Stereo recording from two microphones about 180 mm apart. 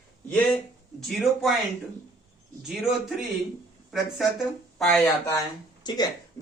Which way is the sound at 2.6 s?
Centre (ahead or behind).